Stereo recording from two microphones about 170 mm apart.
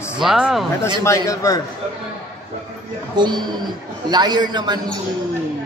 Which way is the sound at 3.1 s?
25° right (ahead or behind).